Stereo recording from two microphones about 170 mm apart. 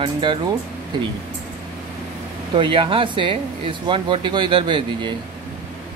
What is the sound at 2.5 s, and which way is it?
Speech, 30° right (ahead or behind).